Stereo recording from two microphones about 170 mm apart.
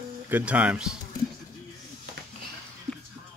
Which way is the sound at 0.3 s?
10° right (ahead or behind).